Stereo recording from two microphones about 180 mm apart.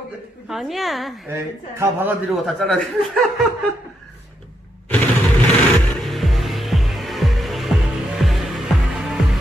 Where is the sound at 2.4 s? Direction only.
Centre (ahead or behind).